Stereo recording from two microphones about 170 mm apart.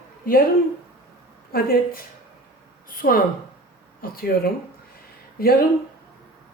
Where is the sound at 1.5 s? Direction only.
60° left (ahead or behind).